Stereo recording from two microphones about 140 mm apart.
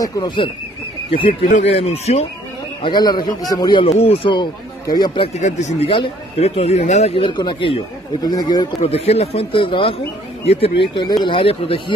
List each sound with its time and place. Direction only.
0.0 s speech: 25° left (ahead or behind)
1.5 s speech: 55° left (ahead or behind)
2.8 s speech: 30° left (ahead or behind)
3.8 s speech: 45° left (ahead or behind)
5.4 s speech: 60° left (ahead or behind)
5.9 s speech: 45° left (ahead or behind)
8.8 s speech: 45° left (ahead or behind)
11.0 s speech: 30° left (ahead or behind)